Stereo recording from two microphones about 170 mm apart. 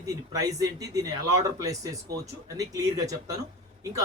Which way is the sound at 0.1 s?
20° right (ahead or behind).